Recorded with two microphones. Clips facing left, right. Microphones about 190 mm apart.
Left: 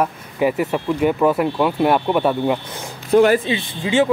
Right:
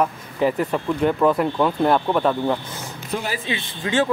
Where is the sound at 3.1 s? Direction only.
55° left (ahead or behind).